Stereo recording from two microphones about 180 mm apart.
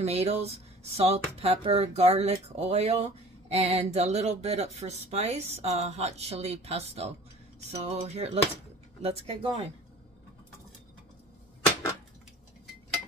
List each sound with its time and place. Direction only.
0.0 s speech: 35° right (ahead or behind)